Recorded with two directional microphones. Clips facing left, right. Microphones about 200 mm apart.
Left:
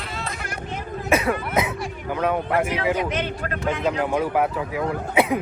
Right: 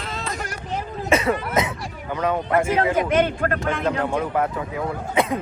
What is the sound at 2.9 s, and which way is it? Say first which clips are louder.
Speech: right 5 dB; 55° right (ahead or behind).